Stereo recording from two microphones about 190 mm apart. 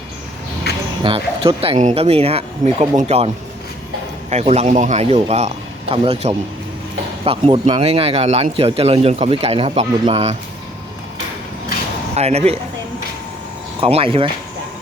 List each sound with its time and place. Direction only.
1.0 s speech: 30° right (ahead or behind)
4.3 s speech: 35° right (ahead or behind)
12.1 s speech: 35° right (ahead or behind)
13.8 s speech: 30° right (ahead or behind)